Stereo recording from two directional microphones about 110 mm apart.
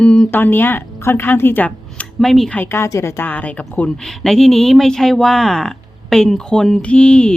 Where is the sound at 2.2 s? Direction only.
Centre (ahead or behind).